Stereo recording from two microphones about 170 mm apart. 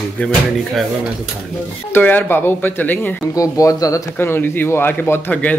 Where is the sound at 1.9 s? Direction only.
10° left (ahead or behind).